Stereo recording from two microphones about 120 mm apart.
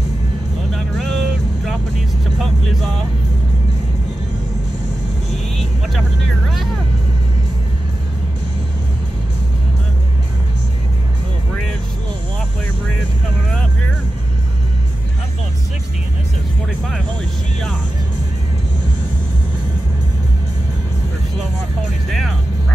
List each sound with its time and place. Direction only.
0.7 s vehicle: centre (ahead or behind)